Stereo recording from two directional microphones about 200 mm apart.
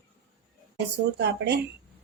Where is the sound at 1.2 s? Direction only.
55° right (ahead or behind).